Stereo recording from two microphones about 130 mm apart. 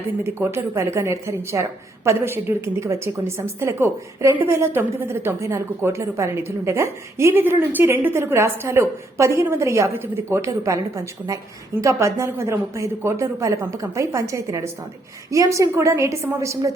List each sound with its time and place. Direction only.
0.3 s a woman's voice: 20° right (ahead or behind)